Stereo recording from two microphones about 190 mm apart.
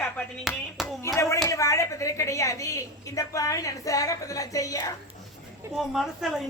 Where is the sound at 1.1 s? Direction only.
15° left (ahead or behind).